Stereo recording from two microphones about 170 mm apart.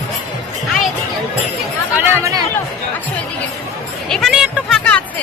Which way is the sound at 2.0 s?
15° right (ahead or behind).